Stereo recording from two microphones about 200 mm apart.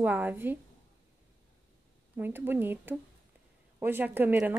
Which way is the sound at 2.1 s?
10° right (ahead or behind).